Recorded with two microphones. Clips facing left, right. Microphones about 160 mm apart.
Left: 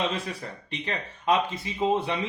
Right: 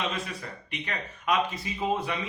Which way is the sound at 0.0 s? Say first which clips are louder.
Left 3 dB; 30° left (ahead or behind).